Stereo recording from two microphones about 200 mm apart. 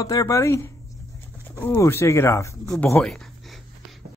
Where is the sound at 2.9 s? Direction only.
Centre (ahead or behind).